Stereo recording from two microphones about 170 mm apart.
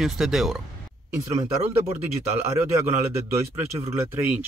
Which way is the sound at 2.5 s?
15° right (ahead or behind).